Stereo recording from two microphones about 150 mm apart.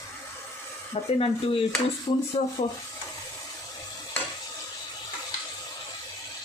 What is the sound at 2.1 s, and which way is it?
Speech, 30° left (ahead or behind).